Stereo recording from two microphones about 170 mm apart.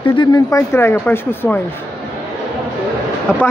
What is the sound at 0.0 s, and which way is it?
Speech, 30° left (ahead or behind).